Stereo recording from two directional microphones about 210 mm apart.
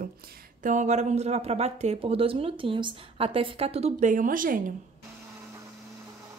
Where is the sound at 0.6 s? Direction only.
35° right (ahead or behind).